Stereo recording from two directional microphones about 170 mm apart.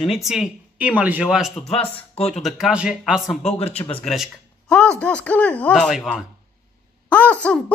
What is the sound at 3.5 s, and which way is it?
Speech, 35° left (ahead or behind).